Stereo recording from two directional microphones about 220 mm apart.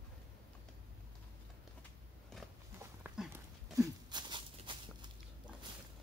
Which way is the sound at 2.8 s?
10° right (ahead or behind).